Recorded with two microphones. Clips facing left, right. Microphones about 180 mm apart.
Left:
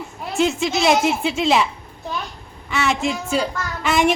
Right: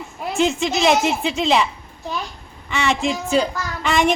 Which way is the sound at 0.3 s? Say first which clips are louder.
Even; centre (ahead or behind).